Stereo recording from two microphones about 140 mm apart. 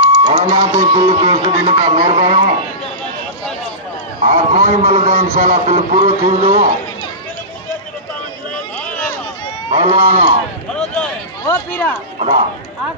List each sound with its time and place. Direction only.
0.0 s a man's voice: 50° right (ahead or behind)
4.3 s a man's voice: 45° right (ahead or behind)
9.8 s a man's voice: 45° right (ahead or behind)
10.7 s a sound: 5° left (ahead or behind)
11.4 s speech: 20° left (ahead or behind)
12.2 s a man's voice: 45° right (ahead or behind)